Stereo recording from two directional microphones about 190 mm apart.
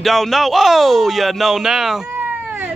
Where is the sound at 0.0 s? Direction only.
Centre (ahead or behind).